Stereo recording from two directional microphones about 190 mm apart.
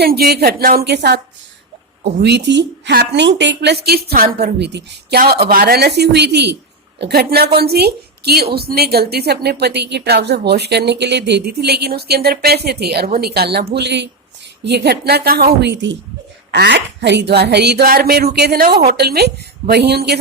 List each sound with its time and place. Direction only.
0.0 s a woman's voice: 55° right (ahead or behind)
2.2 s a woman's voice: 65° right (ahead or behind)